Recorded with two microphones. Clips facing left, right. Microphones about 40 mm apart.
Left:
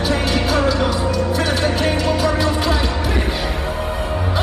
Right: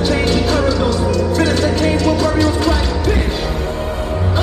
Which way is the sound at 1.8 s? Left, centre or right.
Left.